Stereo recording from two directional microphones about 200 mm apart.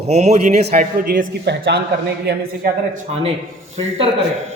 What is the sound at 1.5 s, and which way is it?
Speech, 60° right (ahead or behind).